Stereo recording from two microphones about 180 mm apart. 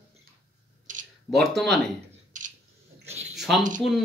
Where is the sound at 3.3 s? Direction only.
Centre (ahead or behind).